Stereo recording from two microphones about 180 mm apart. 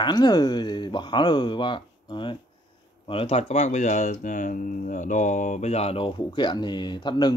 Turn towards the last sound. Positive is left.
turn(degrees=25)  # may be behind; listen again after turning